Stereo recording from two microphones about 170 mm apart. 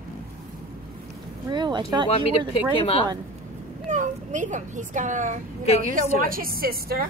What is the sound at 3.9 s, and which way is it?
A child's voice, 45° right (ahead or behind).